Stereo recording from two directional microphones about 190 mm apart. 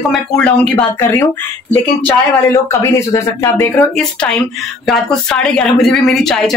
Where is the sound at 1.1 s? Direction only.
15° left (ahead or behind).